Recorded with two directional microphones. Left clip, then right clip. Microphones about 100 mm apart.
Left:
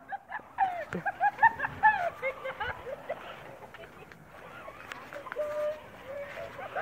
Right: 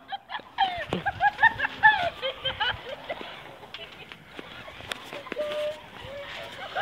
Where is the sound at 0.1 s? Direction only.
30° right (ahead or behind).